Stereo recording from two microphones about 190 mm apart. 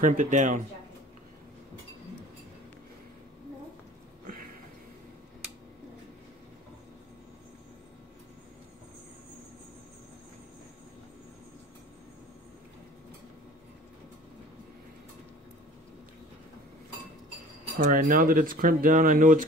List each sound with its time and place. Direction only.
0.0 s speech: 45° right (ahead or behind)
17.7 s speech: 45° right (ahead or behind)